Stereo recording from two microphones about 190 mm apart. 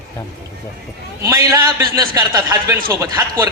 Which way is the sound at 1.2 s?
15° right (ahead or behind).